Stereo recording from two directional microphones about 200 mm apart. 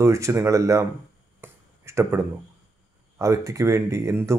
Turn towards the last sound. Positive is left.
turn(degrees=-15)  # may be behind; listen again after turning